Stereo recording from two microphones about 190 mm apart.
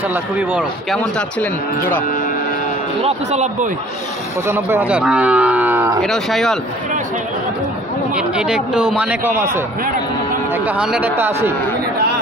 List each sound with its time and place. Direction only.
0.1 s a man's voice: 10° right (ahead or behind)
1.4 s speech: 10° left (ahead or behind)
3.0 s speech: 35° right (ahead or behind)
4.5 s cattle: 10° right (ahead or behind)
6.0 s speech: centre (ahead or behind)
8.2 s a man's voice: 5° right (ahead or behind)
10.8 s a man's voice: 5° right (ahead or behind)